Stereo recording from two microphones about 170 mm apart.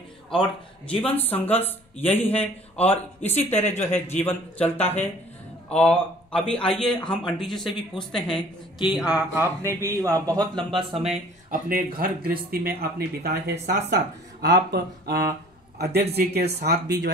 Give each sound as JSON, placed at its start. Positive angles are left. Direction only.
{"t": 0.3, "sound": "speech", "side_deg": 5}
{"t": 11.7, "sound": "speech", "side_deg": -60}
{"t": 13.8, "sound": "speech", "side_deg": -85}